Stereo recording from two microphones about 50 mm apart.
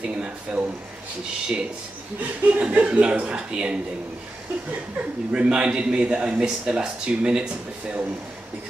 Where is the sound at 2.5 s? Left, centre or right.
Right.